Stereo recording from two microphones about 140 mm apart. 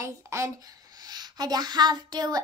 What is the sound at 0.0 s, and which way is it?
A woman's voice, 20° right (ahead or behind).